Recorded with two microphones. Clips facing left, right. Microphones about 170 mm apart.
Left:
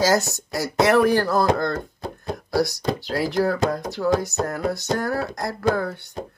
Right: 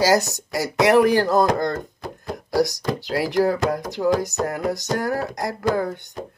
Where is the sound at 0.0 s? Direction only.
15° right (ahead or behind).